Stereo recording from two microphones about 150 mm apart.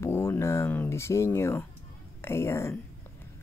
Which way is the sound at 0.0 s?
15° left (ahead or behind).